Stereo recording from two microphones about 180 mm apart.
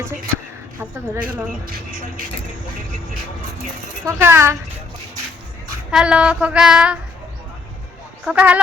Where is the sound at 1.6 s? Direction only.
55° right (ahead or behind).